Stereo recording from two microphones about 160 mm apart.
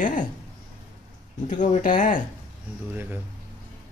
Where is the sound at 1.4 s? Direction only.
50° left (ahead or behind).